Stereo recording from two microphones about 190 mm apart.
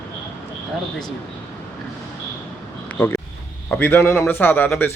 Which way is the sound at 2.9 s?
10° left (ahead or behind).